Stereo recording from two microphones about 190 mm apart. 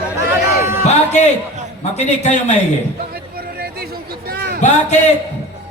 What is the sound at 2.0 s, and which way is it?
Speech, 35° left (ahead or behind).